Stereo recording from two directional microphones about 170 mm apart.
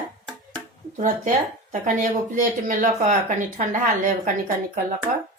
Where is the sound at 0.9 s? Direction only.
45° right (ahead or behind).